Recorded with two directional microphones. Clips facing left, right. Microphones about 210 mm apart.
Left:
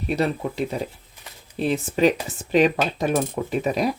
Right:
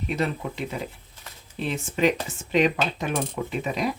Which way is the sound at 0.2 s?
35° left (ahead or behind).